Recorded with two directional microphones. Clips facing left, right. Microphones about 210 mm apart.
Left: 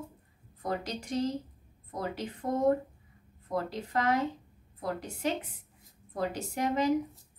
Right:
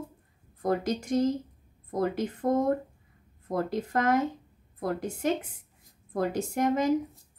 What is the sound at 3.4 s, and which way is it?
Speech, 50° right (ahead or behind).